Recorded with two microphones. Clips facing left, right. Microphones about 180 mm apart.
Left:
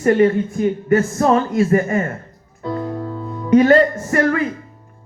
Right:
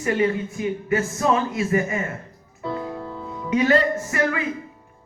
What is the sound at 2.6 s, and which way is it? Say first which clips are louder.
Music: left 5 dB; centre (ahead or behind).